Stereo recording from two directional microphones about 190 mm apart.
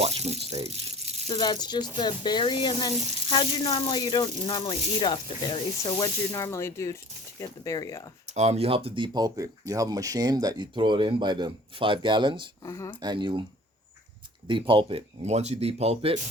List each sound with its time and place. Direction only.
0.0 s speech: 35° right (ahead or behind)
1.3 s speech: 20° left (ahead or behind)
8.3 s speech: 35° right (ahead or behind)
12.6 s speech: 15° left (ahead or behind)
13.0 s speech: 25° right (ahead or behind)
14.4 s speech: 25° right (ahead or behind)